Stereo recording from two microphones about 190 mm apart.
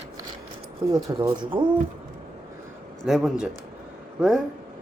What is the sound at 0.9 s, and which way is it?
Speech, 15° right (ahead or behind).